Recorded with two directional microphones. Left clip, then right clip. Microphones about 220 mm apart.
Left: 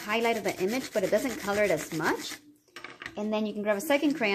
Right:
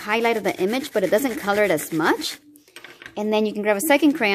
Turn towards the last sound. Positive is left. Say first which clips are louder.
# right 8 dB
turn(degrees=-45)  # may be behind; listen again after turning